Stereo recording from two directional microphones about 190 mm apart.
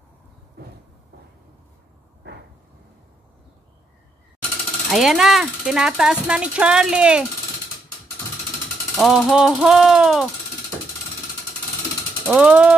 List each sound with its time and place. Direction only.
4.9 s speech: centre (ahead or behind)
8.9 s speech: centre (ahead or behind)
12.3 s ratchet: 5° right (ahead or behind)